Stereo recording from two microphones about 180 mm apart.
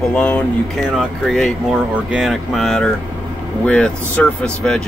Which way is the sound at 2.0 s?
5° right (ahead or behind).